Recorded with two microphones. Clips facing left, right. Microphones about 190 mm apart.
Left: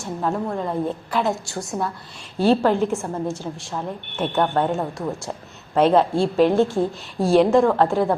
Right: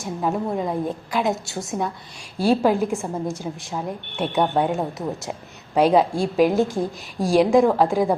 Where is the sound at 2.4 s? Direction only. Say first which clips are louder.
Left 1 dB; 10° right (ahead or behind).